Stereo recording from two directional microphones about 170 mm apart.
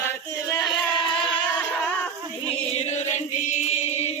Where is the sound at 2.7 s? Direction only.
40° left (ahead or behind).